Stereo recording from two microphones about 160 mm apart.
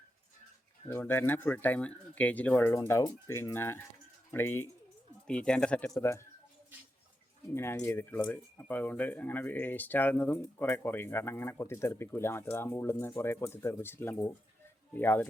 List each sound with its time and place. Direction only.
0.9 s speech: 15° left (ahead or behind)
5.9 s speech: 15° left (ahead or behind)
7.5 s speech: 15° left (ahead or behind)